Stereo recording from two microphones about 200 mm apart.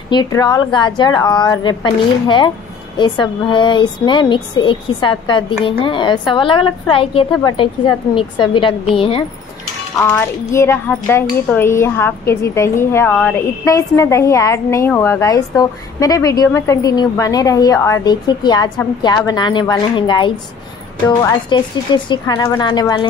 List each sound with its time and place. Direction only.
0.1 s a woman's voice: 20° left (ahead or behind)
9.9 s a woman's voice: 10° left (ahead or behind)